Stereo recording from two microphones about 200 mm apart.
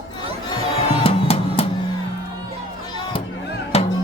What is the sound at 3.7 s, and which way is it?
Music, 30° left (ahead or behind).